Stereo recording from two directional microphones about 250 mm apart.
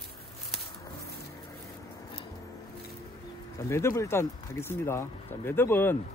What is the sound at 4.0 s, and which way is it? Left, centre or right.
Speech, centre.